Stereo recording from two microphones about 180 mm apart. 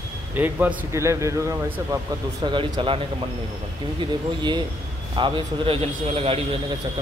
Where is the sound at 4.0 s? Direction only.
25° right (ahead or behind).